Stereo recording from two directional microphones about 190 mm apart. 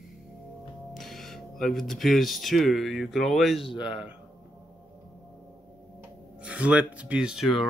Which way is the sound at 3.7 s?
25° left (ahead or behind).